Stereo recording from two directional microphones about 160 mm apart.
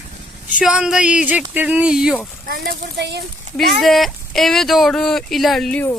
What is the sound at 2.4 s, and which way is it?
Speech, 80° right.